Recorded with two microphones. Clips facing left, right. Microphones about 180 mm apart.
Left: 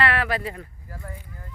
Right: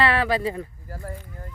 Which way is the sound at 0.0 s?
30° right (ahead or behind).